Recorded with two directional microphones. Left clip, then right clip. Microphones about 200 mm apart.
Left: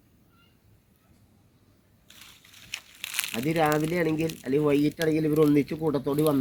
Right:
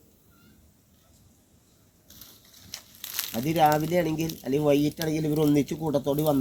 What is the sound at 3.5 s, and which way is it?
Speech, 55° right (ahead or behind).